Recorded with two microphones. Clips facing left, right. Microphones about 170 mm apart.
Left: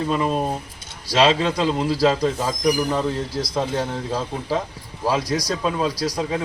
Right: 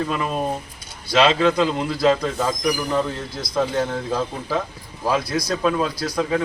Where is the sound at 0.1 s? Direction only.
30° left (ahead or behind).